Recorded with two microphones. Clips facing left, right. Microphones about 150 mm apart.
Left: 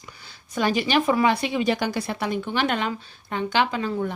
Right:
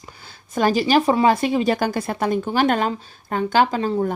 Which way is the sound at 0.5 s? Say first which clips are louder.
Right 4 dB; 40° right (ahead or behind).